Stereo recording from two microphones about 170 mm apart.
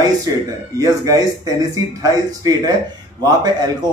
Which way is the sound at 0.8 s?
20° right (ahead or behind).